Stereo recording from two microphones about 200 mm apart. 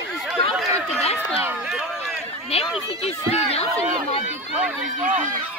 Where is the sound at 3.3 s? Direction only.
30° left (ahead or behind).